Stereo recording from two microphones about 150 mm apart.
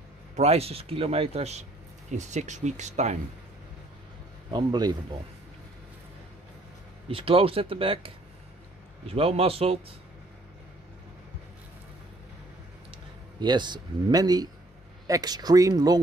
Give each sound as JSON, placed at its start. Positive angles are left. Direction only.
{"t": 0.4, "sound": "speech", "side_deg": -45}
{"t": 4.5, "sound": "speech", "side_deg": -30}
{"t": 7.1, "sound": "speech", "side_deg": -40}
{"t": 13.4, "sound": "speech", "side_deg": -30}